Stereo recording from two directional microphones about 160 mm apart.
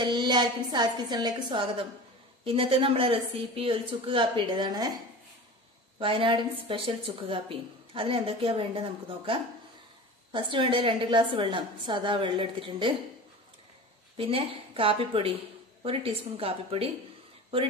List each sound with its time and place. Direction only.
0.0 s a woman's voice: 25° right (ahead or behind)
5.9 s a woman's voice: 35° right (ahead or behind)
14.1 s a woman's voice: 35° right (ahead or behind)